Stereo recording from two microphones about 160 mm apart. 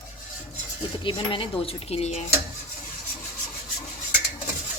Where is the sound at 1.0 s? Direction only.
30° left (ahead or behind).